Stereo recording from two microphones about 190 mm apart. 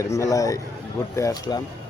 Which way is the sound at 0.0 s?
15° left (ahead or behind).